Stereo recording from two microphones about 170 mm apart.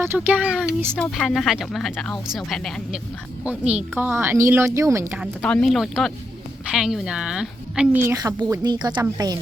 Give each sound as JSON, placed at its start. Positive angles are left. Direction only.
{"t": 0.0, "sound": "speech", "side_deg": -10}
{"t": 3.4, "sound": "speech", "side_deg": -10}
{"t": 5.2, "sound": "speech", "side_deg": 5}